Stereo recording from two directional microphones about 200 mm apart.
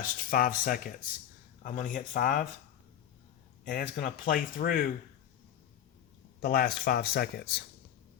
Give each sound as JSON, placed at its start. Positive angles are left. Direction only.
{"t": 0.0, "sound": "speech", "side_deg": 45}
{"t": 3.7, "sound": "speech", "side_deg": 45}
{"t": 6.4, "sound": "speech", "side_deg": 50}